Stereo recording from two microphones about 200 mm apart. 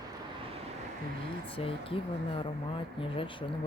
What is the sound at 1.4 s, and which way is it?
Speech, 25° left (ahead or behind).